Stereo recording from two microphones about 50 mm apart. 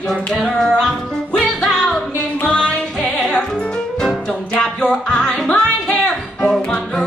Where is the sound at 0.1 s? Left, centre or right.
Centre.